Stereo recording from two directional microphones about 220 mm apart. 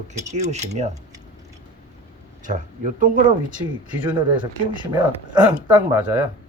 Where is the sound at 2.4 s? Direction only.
35° right (ahead or behind).